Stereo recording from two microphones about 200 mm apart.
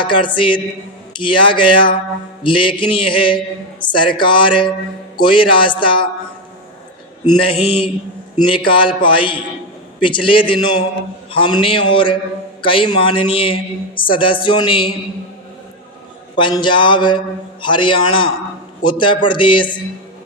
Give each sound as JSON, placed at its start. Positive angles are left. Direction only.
{"t": 0.0, "sound": "a man's voice", "side_deg": 25}
{"t": 7.3, "sound": "a man's voice", "side_deg": 25}
{"t": 16.4, "sound": "a man's voice", "side_deg": 25}